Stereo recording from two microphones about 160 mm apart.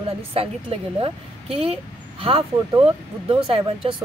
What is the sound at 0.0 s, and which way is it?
A woman's voice, 35° right (ahead or behind).